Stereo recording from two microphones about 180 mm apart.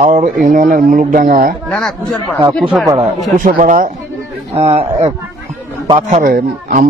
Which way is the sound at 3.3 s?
50° right (ahead or behind).